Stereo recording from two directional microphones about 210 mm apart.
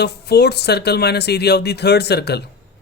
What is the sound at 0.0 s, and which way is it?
Speech, 50° left (ahead or behind).